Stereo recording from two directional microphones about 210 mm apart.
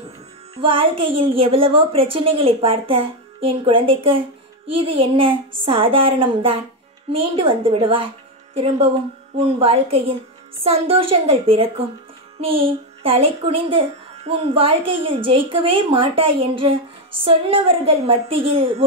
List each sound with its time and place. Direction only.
0.6 s a child's voice: 25° right (ahead or behind)